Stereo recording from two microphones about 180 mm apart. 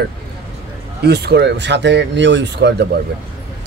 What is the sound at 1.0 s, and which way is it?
A man's voice, 65° right (ahead or behind).